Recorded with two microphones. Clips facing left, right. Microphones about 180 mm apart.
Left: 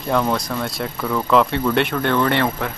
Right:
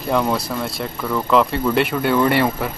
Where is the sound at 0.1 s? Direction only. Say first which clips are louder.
Even; 5° right (ahead or behind).